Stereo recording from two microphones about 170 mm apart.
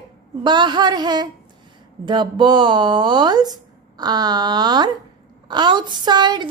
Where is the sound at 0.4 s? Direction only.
25° right (ahead or behind).